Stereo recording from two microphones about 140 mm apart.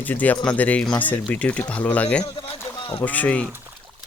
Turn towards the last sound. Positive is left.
turn(degrees=10)  # may be behind; listen again after turning